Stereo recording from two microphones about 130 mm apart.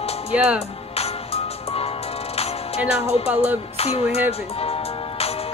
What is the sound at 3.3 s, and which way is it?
Speech, 10° right (ahead or behind).